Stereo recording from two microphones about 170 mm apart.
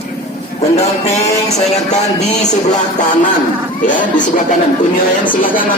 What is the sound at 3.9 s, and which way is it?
Speech, 50° left (ahead or behind).